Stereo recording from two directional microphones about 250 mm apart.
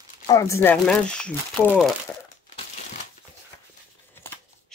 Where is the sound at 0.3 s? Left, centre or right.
Centre.